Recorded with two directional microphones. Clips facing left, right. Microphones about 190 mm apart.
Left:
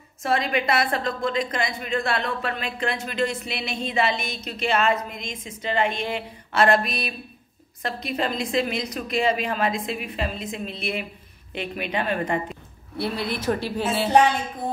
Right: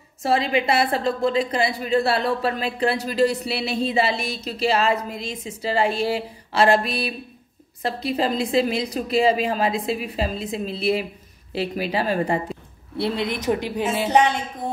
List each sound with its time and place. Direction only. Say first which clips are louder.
0.2 s a woman's voice: right 3 dB; 30° right (ahead or behind)
12.9 s a woman's voice: right 3 dB; 25° right (ahead or behind)